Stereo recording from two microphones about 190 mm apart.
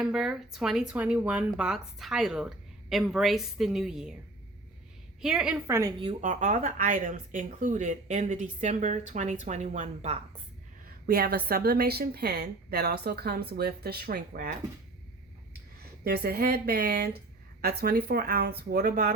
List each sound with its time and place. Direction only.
0.0 s speech: 5° right (ahead or behind)
5.2 s a woman's voice: 5° right (ahead or behind)
6.0 s speech: 35° right (ahead or behind)
10.8 s a woman's voice: 50° right (ahead or behind)
16.0 s a woman's voice: 55° right (ahead or behind)